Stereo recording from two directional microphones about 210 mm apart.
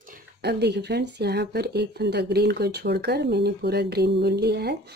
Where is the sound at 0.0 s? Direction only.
45° right (ahead or behind).